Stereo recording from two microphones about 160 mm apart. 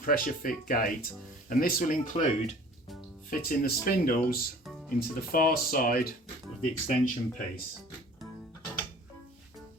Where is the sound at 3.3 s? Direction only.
65° left (ahead or behind).